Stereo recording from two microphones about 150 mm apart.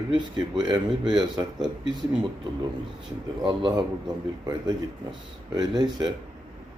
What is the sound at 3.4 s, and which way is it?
Speech, 30° right (ahead or behind).